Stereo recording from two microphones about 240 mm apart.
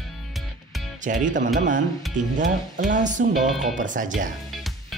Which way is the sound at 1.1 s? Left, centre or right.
Right.